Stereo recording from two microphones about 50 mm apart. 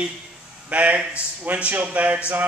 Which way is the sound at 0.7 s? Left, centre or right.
Right.